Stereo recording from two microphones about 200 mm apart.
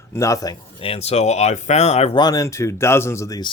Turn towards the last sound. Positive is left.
turn(degrees=15)  # may be behind; listen again after turning